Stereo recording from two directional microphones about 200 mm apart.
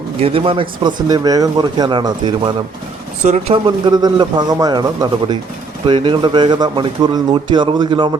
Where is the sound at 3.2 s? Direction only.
35° right (ahead or behind).